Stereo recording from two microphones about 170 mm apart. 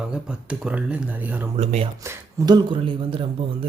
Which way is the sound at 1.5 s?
40° right (ahead or behind).